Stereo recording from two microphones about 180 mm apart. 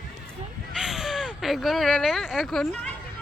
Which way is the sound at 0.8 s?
5° right (ahead or behind).